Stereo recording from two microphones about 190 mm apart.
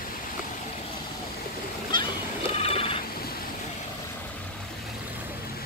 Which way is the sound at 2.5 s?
30° left (ahead or behind).